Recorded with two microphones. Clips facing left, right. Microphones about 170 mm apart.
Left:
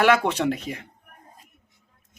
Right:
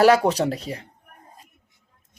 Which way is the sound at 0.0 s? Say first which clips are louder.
Right 3 dB; 35° right (ahead or behind).